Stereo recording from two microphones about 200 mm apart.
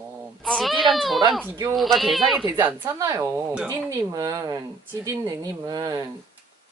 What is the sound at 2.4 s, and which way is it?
Speech, 15° right (ahead or behind).